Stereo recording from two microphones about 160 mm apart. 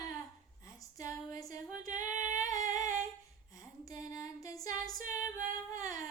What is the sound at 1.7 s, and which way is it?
Female singing, 55° right (ahead or behind).